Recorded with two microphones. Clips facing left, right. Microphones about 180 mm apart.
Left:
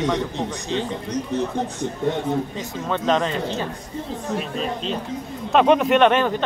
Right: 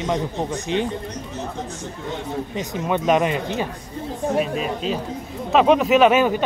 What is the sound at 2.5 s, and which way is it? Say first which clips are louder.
Speech: right 3 dB; 15° right (ahead or behind).